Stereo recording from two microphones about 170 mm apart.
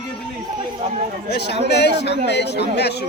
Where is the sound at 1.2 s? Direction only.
75° left (ahead or behind).